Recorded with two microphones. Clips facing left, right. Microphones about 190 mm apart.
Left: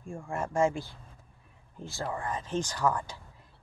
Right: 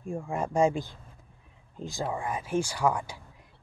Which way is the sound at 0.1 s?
20° right (ahead or behind).